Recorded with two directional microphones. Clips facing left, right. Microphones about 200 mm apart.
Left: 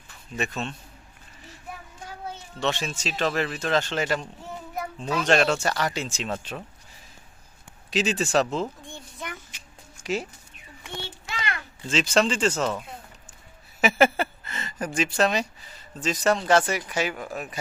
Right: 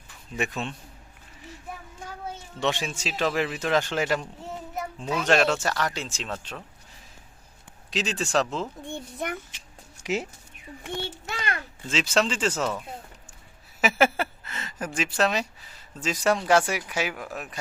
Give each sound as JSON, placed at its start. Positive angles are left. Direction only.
{"t": 0.3, "sound": "speech", "side_deg": -15}
{"t": 2.6, "sound": "speech", "side_deg": -15}
{"t": 7.9, "sound": "speech", "side_deg": 5}
{"t": 8.8, "sound": "speech", "side_deg": -60}
{"t": 10.8, "sound": "a child's voice", "side_deg": -50}
{"t": 11.9, "sound": "speech", "side_deg": -5}
{"t": 13.8, "sound": "speech", "side_deg": -5}